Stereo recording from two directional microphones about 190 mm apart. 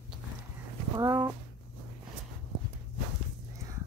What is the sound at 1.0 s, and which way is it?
Speech, 15° right (ahead or behind).